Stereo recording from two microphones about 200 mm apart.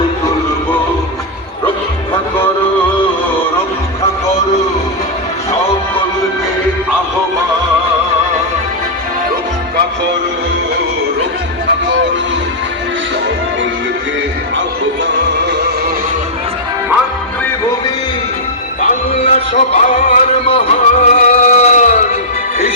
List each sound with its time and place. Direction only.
18.9 s music: 35° left (ahead or behind)